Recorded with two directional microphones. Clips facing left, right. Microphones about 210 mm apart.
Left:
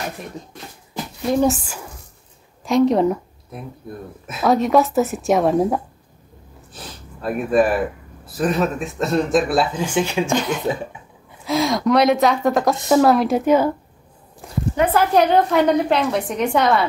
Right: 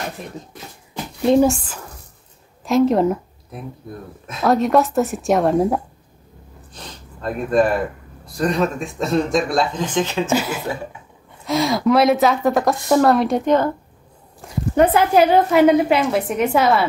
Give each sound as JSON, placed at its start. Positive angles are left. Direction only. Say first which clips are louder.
{"t": 1.4, "sound": "a woman's voice", "louder": "right 2 dB", "side_deg": 5}
{"t": 6.7, "sound": "sniff", "louder": "left 1 dB", "side_deg": 5}
{"t": 8.3, "sound": "a woman's voice", "louder": "even", "side_deg": 5}
{"t": 10.3, "sound": "a woman's voice", "louder": "left 1 dB", "side_deg": -5}
{"t": 14.8, "sound": "speech", "louder": "right 5 dB", "side_deg": -50}
{"t": 15.1, "sound": "a woman's voice", "louder": "right 2 dB", "side_deg": -5}